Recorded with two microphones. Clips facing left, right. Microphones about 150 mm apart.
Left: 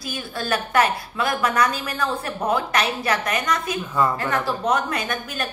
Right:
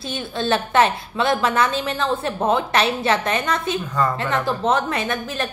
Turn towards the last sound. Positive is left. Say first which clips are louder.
# right 3 dB
turn(degrees=-25)  # may be behind; listen again after turning